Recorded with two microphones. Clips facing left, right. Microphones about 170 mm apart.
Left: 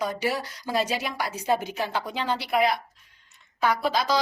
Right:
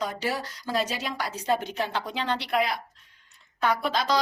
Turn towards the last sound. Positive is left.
turn(degrees=5)  # may be behind; listen again after turning